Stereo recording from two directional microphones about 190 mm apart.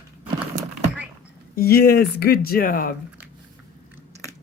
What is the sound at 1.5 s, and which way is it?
Speech, 55° left (ahead or behind).